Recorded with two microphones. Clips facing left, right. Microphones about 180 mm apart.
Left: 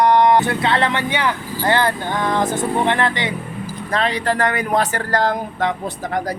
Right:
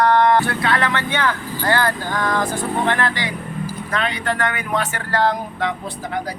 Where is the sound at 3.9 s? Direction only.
35° left (ahead or behind).